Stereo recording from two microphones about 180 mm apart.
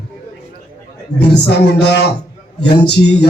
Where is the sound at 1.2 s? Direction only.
65° left (ahead or behind).